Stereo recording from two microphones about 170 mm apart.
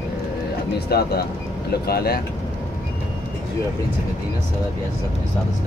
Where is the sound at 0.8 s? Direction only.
70° left (ahead or behind).